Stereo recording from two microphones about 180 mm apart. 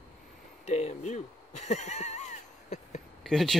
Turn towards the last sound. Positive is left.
turn(degrees=0)  # may be behind; listen again after turning